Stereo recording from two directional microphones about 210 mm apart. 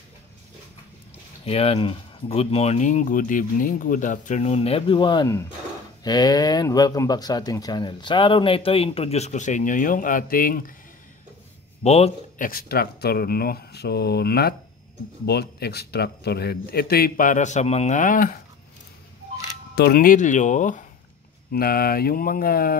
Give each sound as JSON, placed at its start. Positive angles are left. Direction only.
{"t": 1.4, "sound": "speech", "side_deg": 30}
{"t": 11.8, "sound": "a man's voice", "side_deg": 30}
{"t": 12.4, "sound": "a man's voice", "side_deg": 45}
{"t": 19.7, "sound": "a man's voice", "side_deg": 50}